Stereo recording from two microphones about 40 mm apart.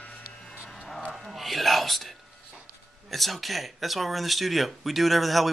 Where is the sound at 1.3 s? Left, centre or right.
Centre.